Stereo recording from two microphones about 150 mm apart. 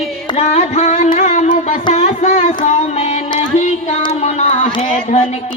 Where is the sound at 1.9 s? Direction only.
50° left (ahead or behind).